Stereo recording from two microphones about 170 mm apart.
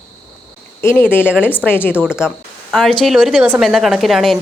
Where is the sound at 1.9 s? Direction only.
5° right (ahead or behind).